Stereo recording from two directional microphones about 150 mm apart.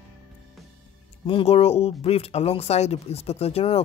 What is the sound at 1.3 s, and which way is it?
Speech, 40° left (ahead or behind).